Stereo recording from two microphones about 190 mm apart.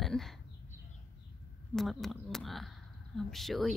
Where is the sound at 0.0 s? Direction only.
Centre (ahead or behind).